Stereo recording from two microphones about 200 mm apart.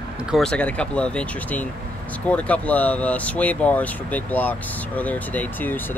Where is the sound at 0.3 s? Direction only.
5° left (ahead or behind).